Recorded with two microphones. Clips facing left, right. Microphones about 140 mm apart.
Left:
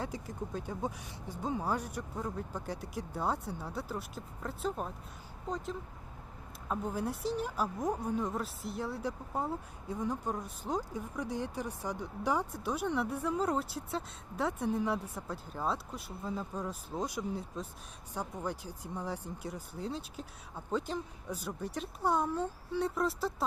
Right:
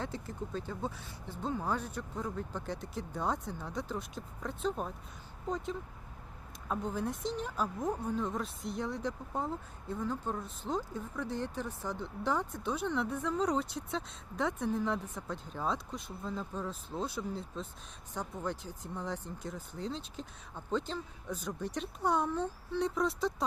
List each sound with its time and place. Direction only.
0.0 s speech: 10° left (ahead or behind)